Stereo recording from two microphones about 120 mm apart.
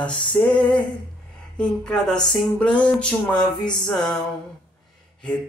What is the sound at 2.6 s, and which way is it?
Speech, 10° left (ahead or behind).